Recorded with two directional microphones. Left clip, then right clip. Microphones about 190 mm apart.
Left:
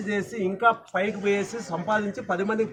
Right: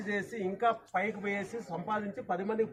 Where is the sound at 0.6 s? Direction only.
20° left (ahead or behind).